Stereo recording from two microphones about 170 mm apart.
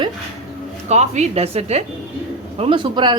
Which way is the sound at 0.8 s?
40° right (ahead or behind).